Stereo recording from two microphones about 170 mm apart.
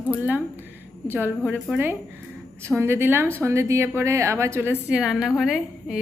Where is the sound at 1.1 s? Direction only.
10° right (ahead or behind).